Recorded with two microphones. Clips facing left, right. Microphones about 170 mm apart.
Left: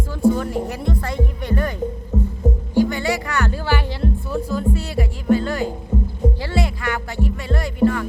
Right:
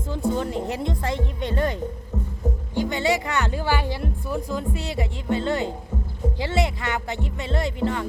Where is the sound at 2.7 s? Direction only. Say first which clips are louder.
Left 3 dB; 20° right (ahead or behind).